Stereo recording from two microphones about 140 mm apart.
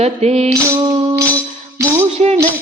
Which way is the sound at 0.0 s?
50° right (ahead or behind).